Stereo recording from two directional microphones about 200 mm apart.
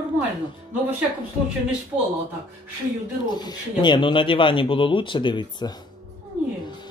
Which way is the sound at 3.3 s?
20° left (ahead or behind).